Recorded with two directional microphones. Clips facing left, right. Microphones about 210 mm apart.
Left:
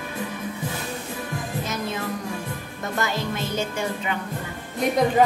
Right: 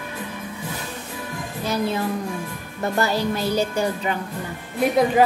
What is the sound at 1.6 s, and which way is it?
Music, 35° right (ahead or behind).